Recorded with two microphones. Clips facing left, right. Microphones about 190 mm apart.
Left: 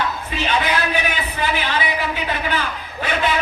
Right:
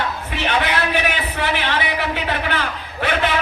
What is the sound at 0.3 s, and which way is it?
Speech, 65° right (ahead or behind).